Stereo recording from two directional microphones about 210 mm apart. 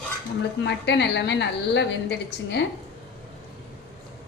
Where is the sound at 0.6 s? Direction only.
55° left (ahead or behind).